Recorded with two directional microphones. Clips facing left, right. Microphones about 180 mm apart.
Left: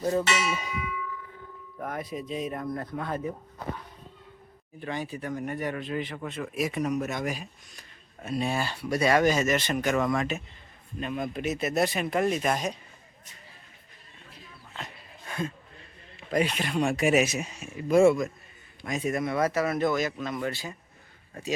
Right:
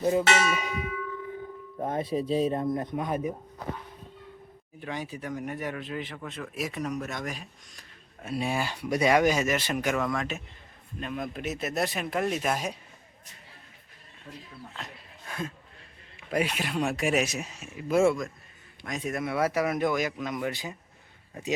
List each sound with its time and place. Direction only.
0.0 s speech: 15° right (ahead or behind)
1.8 s speech: 25° right (ahead or behind)
4.8 s speech: 10° right (ahead or behind)
8.2 s speech: 10° right (ahead or behind)
14.7 s a sound: centre (ahead or behind)
16.3 s speech: 5° right (ahead or behind)